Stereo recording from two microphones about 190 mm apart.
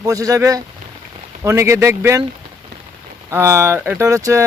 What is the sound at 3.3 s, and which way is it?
Speech, 15° right (ahead or behind).